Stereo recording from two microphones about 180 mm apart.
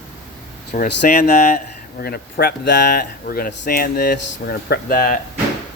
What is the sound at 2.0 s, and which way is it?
Speech, 60° left (ahead or behind).